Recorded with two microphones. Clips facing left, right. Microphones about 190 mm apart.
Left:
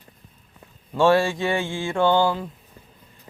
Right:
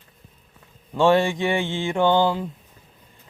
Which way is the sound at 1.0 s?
15° right (ahead or behind).